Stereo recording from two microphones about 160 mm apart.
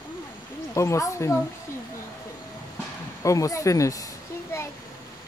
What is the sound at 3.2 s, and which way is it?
Speech, 20° left (ahead or behind).